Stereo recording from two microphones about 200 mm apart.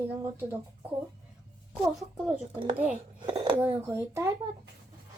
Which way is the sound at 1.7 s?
Centre (ahead or behind).